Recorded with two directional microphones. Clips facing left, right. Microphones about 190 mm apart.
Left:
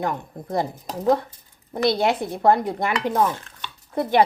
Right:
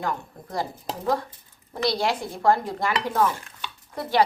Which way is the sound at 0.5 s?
20° left (ahead or behind).